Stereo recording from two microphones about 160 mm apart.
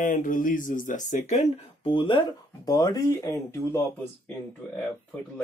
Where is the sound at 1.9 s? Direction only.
30° left (ahead or behind).